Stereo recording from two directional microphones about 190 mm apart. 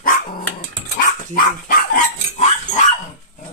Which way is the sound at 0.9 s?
45° left (ahead or behind).